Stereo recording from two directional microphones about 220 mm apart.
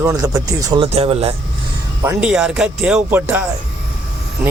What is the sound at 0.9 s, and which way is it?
Speech, 25° right (ahead or behind).